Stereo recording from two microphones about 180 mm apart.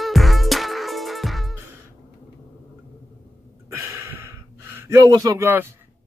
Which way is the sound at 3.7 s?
15° right (ahead or behind).